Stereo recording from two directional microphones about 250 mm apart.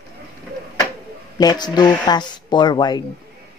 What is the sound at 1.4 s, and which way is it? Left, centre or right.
Speech, centre.